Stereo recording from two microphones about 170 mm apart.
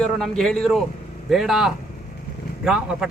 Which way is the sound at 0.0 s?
5° left (ahead or behind).